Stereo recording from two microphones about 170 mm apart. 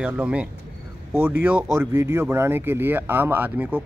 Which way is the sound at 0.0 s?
5° right (ahead or behind).